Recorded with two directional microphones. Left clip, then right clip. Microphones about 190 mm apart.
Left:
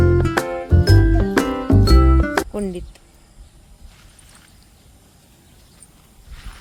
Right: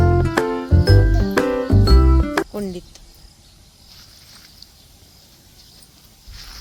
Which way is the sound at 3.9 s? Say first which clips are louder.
Right 5 dB; centre (ahead or behind).